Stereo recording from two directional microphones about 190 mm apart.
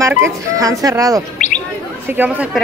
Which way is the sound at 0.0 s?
15° right (ahead or behind).